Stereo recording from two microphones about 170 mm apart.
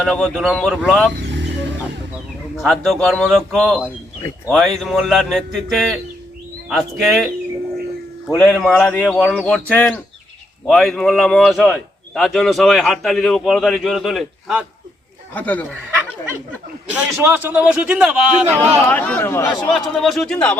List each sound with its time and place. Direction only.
0.0 s a man's voice: centre (ahead or behind)
1.1 s vehicle: 90° right
2.6 s a man's voice: centre (ahead or behind)
8.3 s a man's voice: centre (ahead or behind)
15.4 s speech: 10° left (ahead or behind)
16.9 s a man's voice: 10° right (ahead or behind)
18.9 s speech: 10° left (ahead or behind)
19.5 s a man's voice: centre (ahead or behind)